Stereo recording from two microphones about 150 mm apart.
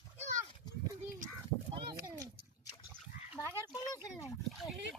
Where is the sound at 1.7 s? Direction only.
30° right (ahead or behind).